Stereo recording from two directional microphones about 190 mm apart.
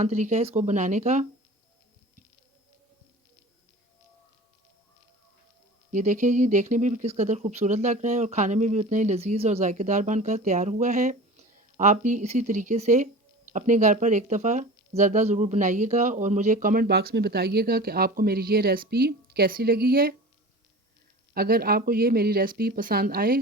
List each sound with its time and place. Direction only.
0.0 s speech: 40° right (ahead or behind)
5.9 s speech: 40° right (ahead or behind)
21.3 s speech: 50° right (ahead or behind)